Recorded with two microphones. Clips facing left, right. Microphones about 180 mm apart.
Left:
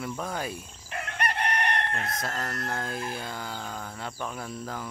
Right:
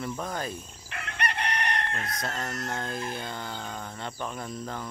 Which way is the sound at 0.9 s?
45° left (ahead or behind).